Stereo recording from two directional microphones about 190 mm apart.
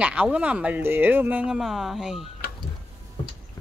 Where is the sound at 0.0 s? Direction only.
5° right (ahead or behind).